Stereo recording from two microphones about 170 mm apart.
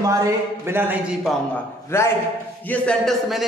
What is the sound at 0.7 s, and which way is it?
Speech, 10° right (ahead or behind).